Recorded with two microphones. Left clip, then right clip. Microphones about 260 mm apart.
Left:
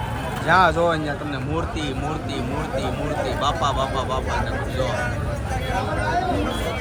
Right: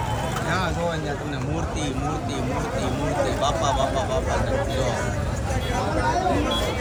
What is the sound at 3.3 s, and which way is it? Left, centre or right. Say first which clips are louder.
Speech: left 3 dB; centre.